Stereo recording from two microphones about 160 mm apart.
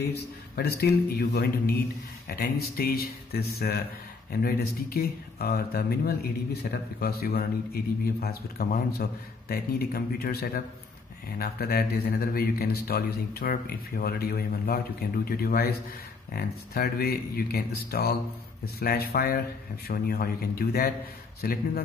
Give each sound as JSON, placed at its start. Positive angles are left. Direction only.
{"t": 0.1, "sound": "a man's voice", "side_deg": 85}